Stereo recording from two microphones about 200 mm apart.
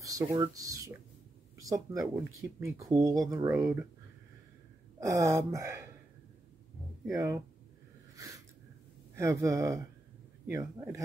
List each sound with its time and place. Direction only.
0.0 s speech: 15° right (ahead or behind)
5.0 s speech: 15° right (ahead or behind)
7.1 s speech: 15° right (ahead or behind)
8.2 s a sound: 15° right (ahead or behind)
9.1 s speech: 15° right (ahead or behind)